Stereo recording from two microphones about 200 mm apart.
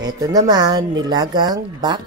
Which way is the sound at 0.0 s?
20° right (ahead or behind).